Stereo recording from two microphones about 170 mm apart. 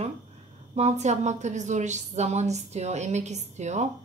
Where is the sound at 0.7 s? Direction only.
40° right (ahead or behind).